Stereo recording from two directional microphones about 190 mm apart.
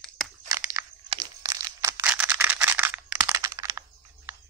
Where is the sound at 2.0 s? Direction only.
5° right (ahead or behind).